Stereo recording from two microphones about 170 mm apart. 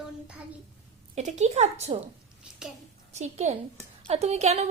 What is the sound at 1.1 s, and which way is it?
Speech, 40° right (ahead or behind).